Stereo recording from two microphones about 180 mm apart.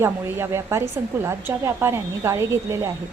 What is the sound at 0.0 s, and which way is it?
A woman's voice, 15° right (ahead or behind).